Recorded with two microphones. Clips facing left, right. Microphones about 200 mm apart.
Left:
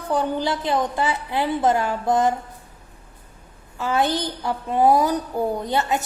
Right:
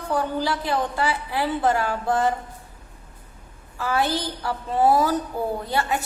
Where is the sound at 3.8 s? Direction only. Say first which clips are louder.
Left 2 dB; 20° left (ahead or behind).